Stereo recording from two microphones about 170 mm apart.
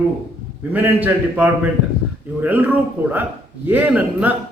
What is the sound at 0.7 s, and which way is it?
A man's voice, 10° right (ahead or behind).